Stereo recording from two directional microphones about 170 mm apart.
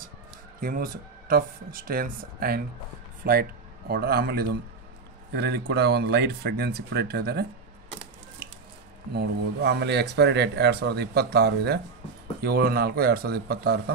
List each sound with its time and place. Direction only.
0.6 s speech: 55° right (ahead or behind)
9.1 s speech: 75° right (ahead or behind)